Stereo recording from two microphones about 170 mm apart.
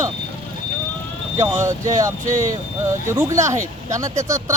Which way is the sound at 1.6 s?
20° right (ahead or behind).